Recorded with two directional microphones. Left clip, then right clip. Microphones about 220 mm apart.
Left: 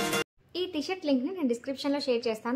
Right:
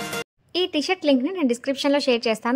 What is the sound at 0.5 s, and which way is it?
A woman's voice, 35° right (ahead or behind).